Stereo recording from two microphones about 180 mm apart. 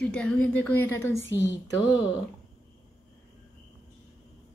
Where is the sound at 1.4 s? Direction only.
80° left.